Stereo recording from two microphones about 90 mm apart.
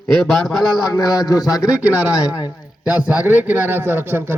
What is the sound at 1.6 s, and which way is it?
A man's voice, 10° right (ahead or behind).